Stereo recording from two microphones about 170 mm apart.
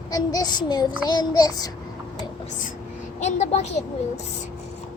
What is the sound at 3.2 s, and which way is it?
Speech, 40° left (ahead or behind).